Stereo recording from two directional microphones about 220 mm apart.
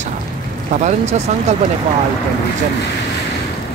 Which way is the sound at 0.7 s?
30° right (ahead or behind).